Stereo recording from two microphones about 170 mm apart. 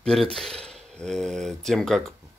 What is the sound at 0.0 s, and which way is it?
Speech, centre (ahead or behind).